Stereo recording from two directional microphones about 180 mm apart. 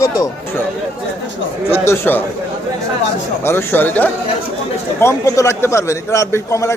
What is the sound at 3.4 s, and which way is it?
A man's voice, 15° left (ahead or behind).